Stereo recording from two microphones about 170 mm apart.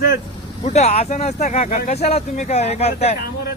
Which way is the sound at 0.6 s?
40° left (ahead or behind).